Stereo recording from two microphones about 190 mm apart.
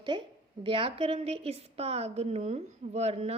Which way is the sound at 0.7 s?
30° right (ahead or behind).